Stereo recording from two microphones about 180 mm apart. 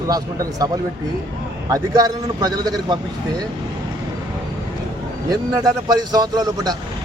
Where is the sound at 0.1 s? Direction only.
20° right (ahead or behind).